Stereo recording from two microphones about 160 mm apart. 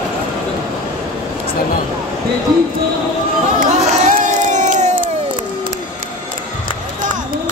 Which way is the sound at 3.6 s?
45° right (ahead or behind).